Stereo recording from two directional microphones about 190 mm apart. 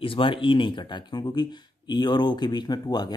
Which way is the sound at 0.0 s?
30° left (ahead or behind).